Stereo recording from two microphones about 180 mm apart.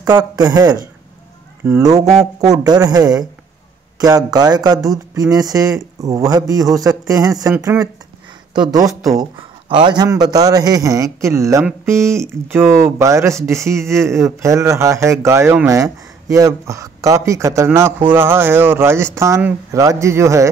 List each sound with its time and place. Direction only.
0.0 s speech: 20° right (ahead or behind)